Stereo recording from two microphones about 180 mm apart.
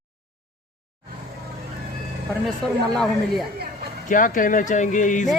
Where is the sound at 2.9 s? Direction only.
Centre (ahead or behind).